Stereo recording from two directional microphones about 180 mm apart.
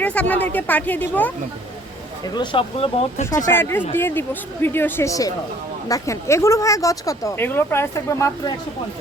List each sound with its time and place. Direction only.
0.0 s speech: 10° left (ahead or behind)
2.2 s speech: 25° left (ahead or behind)
3.4 s speech: 15° left (ahead or behind)